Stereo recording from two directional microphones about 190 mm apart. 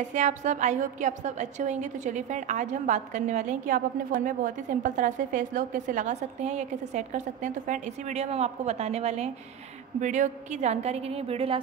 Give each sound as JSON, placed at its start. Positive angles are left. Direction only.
{"t": 0.1, "sound": "a woman's voice", "side_deg": -40}